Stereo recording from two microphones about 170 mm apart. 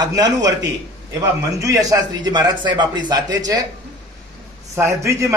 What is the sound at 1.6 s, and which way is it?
A man's voice, 20° right (ahead or behind).